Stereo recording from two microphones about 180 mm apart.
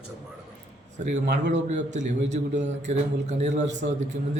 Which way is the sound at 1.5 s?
40° right (ahead or behind).